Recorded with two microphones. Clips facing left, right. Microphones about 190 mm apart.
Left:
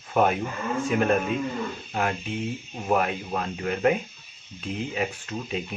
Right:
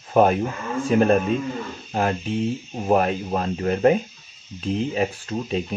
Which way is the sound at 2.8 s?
35° right (ahead or behind).